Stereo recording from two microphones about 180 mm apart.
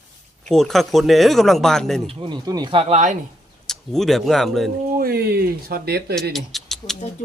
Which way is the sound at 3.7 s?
Centre (ahead or behind).